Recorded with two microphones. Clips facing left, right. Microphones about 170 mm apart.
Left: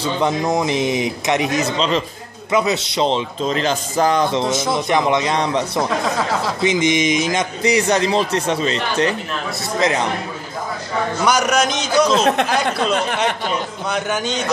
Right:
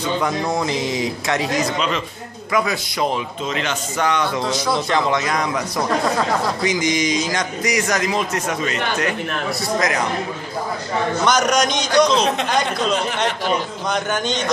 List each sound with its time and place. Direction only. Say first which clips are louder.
0.0 s speech: left 2 dB; 20° left (ahead or behind)
11.2 s a man's voice: left 1 dB; 10° left (ahead or behind)
13.8 s a man's voice: even; 5° left (ahead or behind)